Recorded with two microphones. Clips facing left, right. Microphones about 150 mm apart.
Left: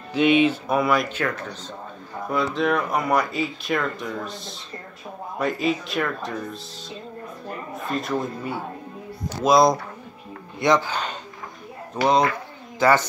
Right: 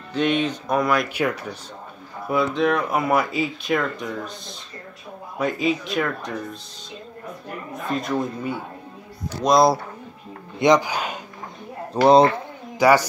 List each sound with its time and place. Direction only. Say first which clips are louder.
0.1 s speech: left 4 dB; 10° left (ahead or behind)
1.0 s speech: right 3 dB; 10° right (ahead or behind)
2.2 s speech: right 2 dB; centre (ahead or behind)
8.0 s speech: right 2 dB; centre (ahead or behind)
10.6 s speech: right 3 dB; 15° right (ahead or behind)
11.9 s speech: right 6 dB; 35° right (ahead or behind)
12.7 s speech: right 2 dB; 10° right (ahead or behind)